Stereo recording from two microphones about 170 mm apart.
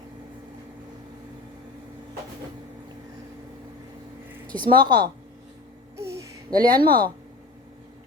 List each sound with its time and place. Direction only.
4.6 s a woman's voice: 25° right (ahead or behind)
6.0 s a sound: 15° right (ahead or behind)
6.5 s speech: 60° right (ahead or behind)